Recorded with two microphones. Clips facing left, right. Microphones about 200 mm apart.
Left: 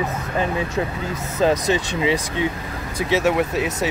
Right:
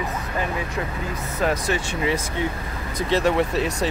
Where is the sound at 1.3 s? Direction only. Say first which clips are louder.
Left 5 dB; 20° left (ahead or behind).